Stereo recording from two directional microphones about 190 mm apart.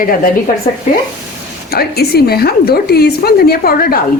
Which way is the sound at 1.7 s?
55° left (ahead or behind).